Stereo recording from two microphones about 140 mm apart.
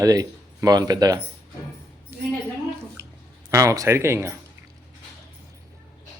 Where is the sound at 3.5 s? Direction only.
20° right (ahead or behind).